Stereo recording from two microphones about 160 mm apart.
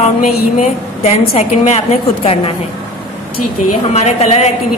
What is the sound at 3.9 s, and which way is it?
Speech, 45° left (ahead or behind).